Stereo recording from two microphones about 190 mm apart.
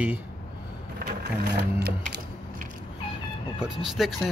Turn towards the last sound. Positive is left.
turn(degrees=0)  # may be behind; listen again after turning